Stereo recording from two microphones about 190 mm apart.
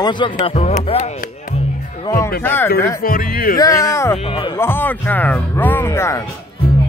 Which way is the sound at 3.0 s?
50° left (ahead or behind).